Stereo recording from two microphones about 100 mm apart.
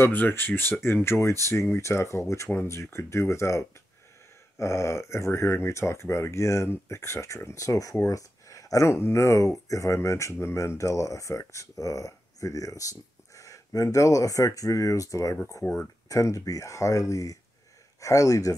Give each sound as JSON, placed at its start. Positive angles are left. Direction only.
{"t": 0.0, "sound": "speech", "side_deg": 20}
{"t": 16.1, "sound": "speech", "side_deg": 35}